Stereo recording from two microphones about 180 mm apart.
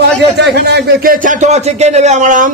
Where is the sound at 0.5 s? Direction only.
60° right (ahead or behind); by 2.5 s 45° right (ahead or behind).